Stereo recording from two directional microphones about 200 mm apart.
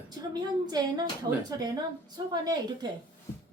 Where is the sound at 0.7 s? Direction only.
20° right (ahead or behind).